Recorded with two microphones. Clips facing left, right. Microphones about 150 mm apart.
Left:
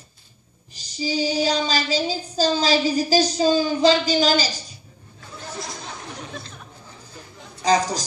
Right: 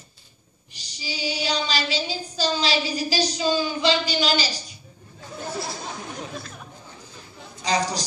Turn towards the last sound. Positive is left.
turn(degrees=45)  # may be behind; listen again after turning